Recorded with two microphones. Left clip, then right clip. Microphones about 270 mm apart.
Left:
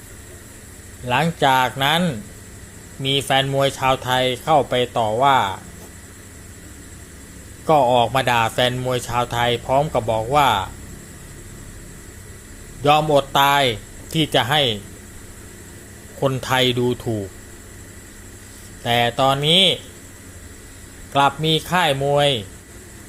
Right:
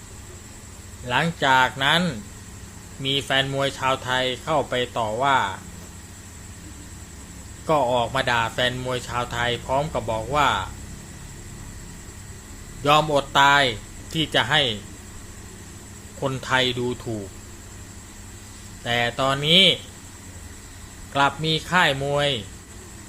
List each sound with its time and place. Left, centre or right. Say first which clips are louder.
1.0 s speech: left 3 dB; centre
7.7 s speech: left 6 dB; centre
12.8 s speech: left 3 dB; centre
16.2 s speech: left 4 dB; centre
18.9 s speech: left 5 dB; centre
21.1 s speech: left 4 dB; centre